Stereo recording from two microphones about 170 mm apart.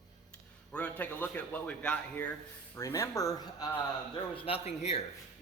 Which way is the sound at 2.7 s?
15° left (ahead or behind).